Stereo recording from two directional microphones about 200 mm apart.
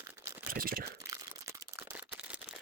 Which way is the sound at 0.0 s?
15° right (ahead or behind).